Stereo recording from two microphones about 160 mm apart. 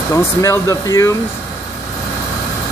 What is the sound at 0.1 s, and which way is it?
Speech, 20° left (ahead or behind).